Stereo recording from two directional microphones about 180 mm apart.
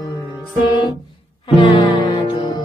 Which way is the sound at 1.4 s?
25° left (ahead or behind).